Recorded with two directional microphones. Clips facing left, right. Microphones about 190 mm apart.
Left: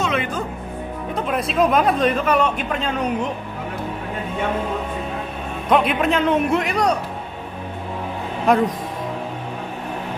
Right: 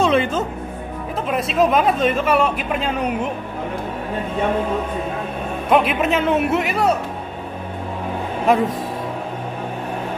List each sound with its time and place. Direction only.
0.0 s music: 30° right (ahead or behind)
1.1 s speech: centre (ahead or behind)
5.7 s speech: 5° right (ahead or behind)
8.5 s speech: centre (ahead or behind)